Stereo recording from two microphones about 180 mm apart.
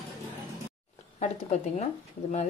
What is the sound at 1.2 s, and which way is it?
Speech, 40° left (ahead or behind).